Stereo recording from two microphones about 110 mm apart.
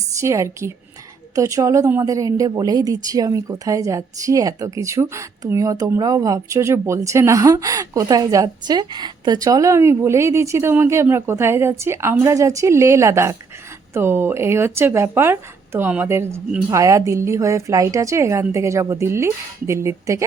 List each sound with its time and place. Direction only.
0.2 s a woman's voice: 30° right (ahead or behind)